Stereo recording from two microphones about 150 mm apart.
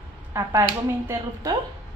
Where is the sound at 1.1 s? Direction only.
20° right (ahead or behind).